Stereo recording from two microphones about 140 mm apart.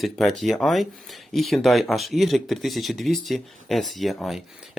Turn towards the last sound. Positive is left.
turn(degrees=0)  # may be behind; listen again after turning